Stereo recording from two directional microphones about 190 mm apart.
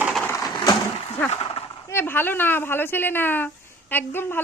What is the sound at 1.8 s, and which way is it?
A woman's voice, 10° left (ahead or behind).